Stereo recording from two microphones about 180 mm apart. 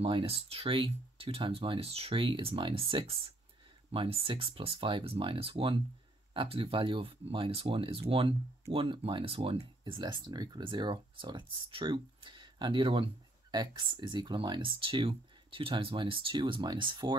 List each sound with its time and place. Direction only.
0.0 s speech: 30° right (ahead or behind)